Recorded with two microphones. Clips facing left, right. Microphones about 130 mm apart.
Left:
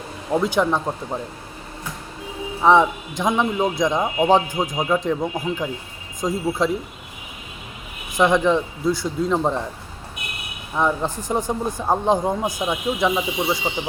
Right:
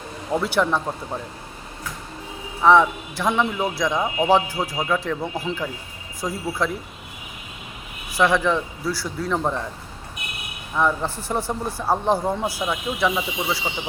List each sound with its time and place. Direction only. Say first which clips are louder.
0.3 s a man's voice: left 2 dB; 15° left (ahead or behind)
2.6 s a man's voice: even; 15° left (ahead or behind)
8.1 s a man's voice: left 2 dB; 20° left (ahead or behind)
10.8 s a man's voice: left 1 dB; 15° left (ahead or behind)